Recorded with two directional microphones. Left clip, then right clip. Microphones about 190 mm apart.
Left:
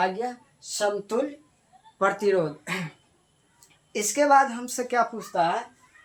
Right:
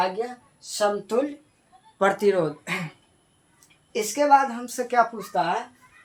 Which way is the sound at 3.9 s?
15° left (ahead or behind).